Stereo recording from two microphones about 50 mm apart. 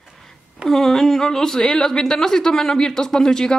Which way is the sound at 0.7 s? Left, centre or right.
Centre.